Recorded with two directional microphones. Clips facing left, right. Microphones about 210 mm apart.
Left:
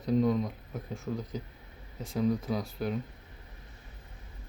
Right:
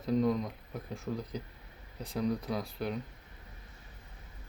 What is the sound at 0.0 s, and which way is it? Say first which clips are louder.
Speech: left 2 dB; centre (ahead or behind).